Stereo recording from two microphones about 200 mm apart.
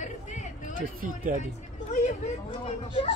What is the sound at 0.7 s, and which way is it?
Speech, 45° right (ahead or behind).